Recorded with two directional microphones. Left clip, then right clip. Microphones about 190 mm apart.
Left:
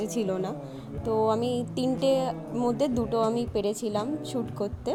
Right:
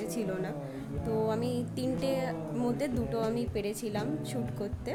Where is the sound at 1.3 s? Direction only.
20° left (ahead or behind).